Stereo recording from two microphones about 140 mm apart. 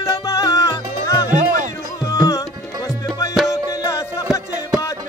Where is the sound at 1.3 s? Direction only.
65° right (ahead or behind).